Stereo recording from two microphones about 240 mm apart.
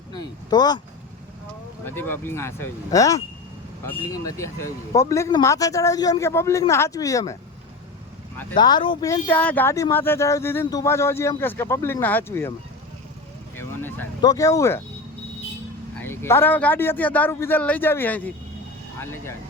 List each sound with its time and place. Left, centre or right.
0.1 s speech: centre
1.8 s speech: centre
8.5 s speech: centre
13.6 s speech: centre
16.0 s speech: centre